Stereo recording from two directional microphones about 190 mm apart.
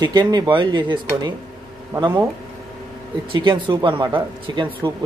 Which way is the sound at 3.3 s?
25° right (ahead or behind).